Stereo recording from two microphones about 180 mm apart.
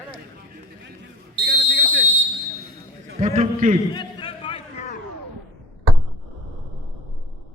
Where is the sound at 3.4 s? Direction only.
40° right (ahead or behind).